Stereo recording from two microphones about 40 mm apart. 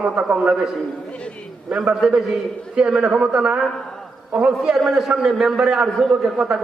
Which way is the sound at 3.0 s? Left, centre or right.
Right.